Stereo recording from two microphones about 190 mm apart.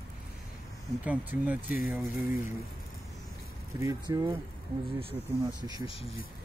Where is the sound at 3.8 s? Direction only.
20° right (ahead or behind).